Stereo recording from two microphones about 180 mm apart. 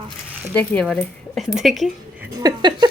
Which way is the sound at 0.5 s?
10° left (ahead or behind).